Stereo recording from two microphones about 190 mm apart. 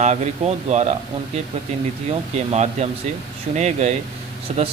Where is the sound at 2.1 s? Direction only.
35° right (ahead or behind).